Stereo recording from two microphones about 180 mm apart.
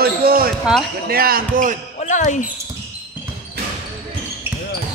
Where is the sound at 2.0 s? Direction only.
45° left (ahead or behind).